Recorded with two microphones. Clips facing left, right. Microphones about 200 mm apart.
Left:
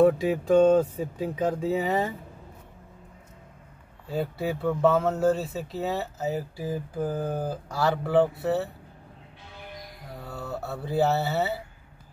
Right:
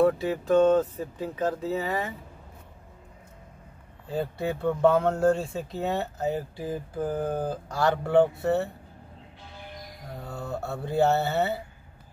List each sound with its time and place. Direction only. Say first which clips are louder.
0.0 s speech: left 2 dB; 15° left (ahead or behind)
4.1 s speech: even; 5° left (ahead or behind)
10.2 s speech: right 1 dB; 5° left (ahead or behind)